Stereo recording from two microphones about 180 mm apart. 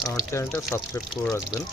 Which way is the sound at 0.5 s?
15° left (ahead or behind).